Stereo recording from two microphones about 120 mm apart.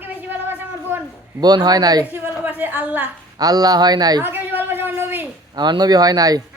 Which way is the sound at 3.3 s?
30° right (ahead or behind).